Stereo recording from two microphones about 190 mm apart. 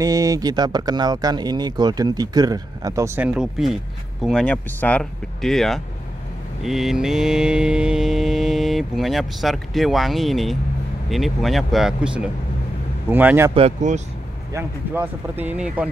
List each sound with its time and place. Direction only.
0.0 s speech: 20° right (ahead or behind)
3.3 s mantra: 5° right (ahead or behind)
13.1 s speech: 10° right (ahead or behind)
13.6 s speech: 35° right (ahead or behind)
14.5 s speech: 10° right (ahead or behind)